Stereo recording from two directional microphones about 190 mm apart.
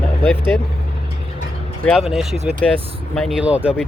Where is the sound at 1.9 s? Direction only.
Centre (ahead or behind).